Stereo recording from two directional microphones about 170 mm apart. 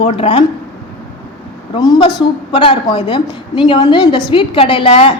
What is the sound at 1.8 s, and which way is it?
A woman's voice, 20° left (ahead or behind).